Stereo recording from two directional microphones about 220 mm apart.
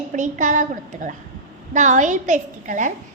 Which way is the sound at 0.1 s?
35° right (ahead or behind).